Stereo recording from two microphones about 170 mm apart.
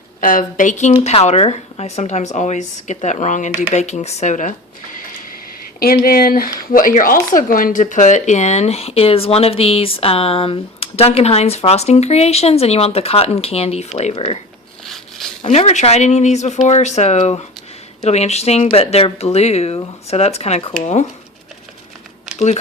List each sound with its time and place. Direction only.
0.2 s speech: 55° left (ahead or behind)
5.8 s speech: 60° left (ahead or behind); by 14.3 s 40° left (ahead or behind)
14.8 s a sound: centre (ahead or behind)
15.4 s speech: 40° left (ahead or behind)